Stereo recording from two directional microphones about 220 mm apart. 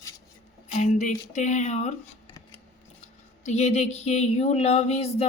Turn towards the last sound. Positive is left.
turn(degrees=30)  # may be behind; listen again after turning